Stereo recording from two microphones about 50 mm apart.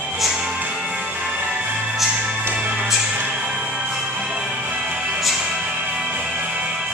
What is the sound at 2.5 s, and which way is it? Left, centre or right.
Music, right.